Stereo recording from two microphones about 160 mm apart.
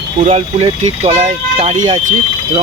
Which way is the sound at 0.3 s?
40° right (ahead or behind).